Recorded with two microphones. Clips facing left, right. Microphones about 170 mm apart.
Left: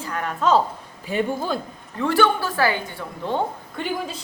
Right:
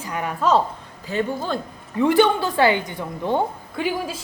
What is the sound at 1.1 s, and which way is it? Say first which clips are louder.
Speech: left 1 dB; 15° left (ahead or behind).